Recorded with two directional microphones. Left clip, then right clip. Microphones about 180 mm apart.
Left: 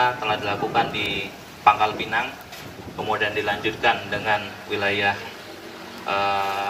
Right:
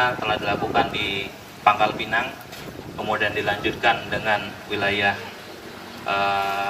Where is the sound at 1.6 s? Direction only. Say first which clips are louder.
Left 1 dB; 25° right (ahead or behind).